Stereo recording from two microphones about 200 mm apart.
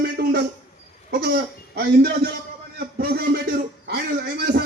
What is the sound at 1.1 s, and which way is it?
Speech, 50° right (ahead or behind).